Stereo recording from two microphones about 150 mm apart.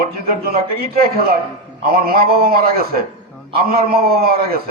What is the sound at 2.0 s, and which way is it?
A man's voice, 80° right.